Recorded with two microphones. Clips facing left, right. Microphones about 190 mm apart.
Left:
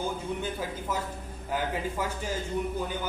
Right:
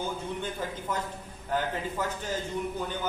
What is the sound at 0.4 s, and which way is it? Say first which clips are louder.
A man's voice: left 1 dB; 10° left (ahead or behind).